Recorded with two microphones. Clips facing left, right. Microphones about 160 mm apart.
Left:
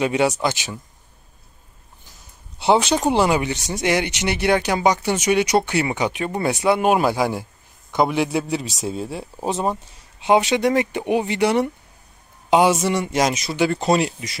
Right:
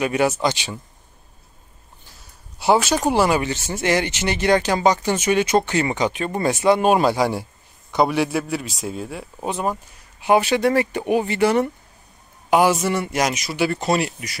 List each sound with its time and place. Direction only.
0.0 s speech: 15° left (ahead or behind)
2.6 s a man's voice: 20° left (ahead or behind)
13.5 s speech: 5° right (ahead or behind)